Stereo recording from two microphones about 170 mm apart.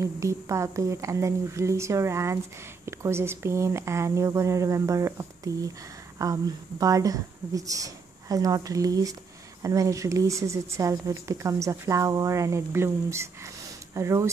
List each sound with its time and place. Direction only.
0.0 s speech: 15° right (ahead or behind)